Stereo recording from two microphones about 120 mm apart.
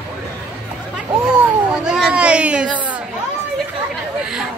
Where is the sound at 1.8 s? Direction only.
5° right (ahead or behind).